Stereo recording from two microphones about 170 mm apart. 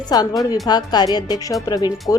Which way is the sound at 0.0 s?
25° left (ahead or behind).